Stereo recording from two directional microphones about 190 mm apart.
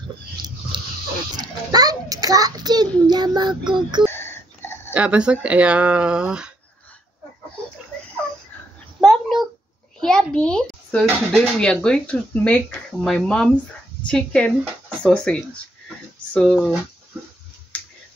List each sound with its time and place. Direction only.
0.7 s a sound: 25° right (ahead or behind)
1.3 s a child's voice: 20° right (ahead or behind)
4.1 s wheeze: 10° left (ahead or behind)
4.9 s a child's voice: 5° right (ahead or behind)
9.0 s a sound: centre (ahead or behind)
9.9 s a child's voice: 5° left (ahead or behind)